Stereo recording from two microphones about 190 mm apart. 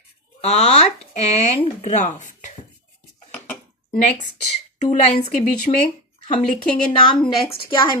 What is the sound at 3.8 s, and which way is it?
Speech, 30° left (ahead or behind).